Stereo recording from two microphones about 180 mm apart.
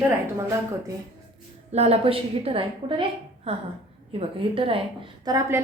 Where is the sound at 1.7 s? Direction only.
35° right (ahead or behind).